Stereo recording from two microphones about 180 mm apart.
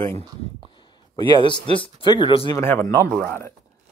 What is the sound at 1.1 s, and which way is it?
Speech, 25° left (ahead or behind).